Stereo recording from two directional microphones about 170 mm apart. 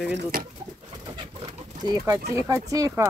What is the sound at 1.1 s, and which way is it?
Bird, 35° right (ahead or behind).